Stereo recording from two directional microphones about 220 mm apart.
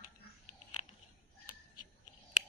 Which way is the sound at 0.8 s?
30° left (ahead or behind).